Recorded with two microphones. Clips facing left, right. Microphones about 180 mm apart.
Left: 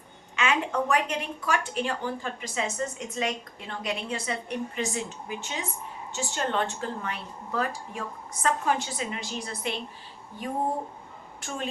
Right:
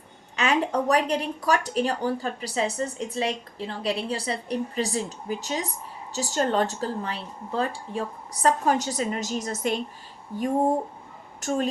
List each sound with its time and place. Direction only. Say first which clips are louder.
0.3 s speech: right 3 dB; 40° right (ahead or behind)